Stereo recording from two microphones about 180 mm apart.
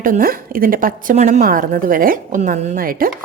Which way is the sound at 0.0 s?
50° right (ahead or behind).